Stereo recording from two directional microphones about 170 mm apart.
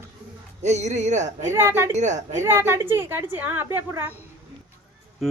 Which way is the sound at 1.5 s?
15° right (ahead or behind).